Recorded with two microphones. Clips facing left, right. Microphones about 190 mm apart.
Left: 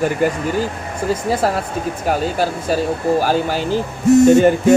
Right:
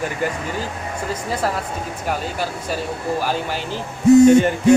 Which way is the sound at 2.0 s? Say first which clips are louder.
Left 6 dB; 40° left (ahead or behind).